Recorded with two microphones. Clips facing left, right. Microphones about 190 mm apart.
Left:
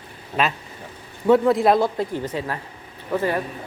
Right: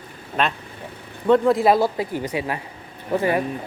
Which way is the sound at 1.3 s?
Centre (ahead or behind).